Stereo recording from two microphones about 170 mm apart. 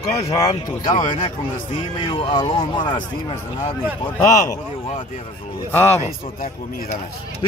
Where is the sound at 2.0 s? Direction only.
30° left (ahead or behind).